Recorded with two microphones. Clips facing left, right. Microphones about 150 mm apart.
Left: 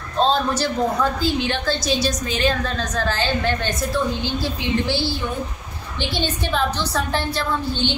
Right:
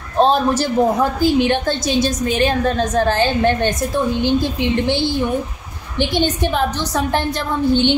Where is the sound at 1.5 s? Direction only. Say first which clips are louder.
Right 4 dB; 50° right (ahead or behind).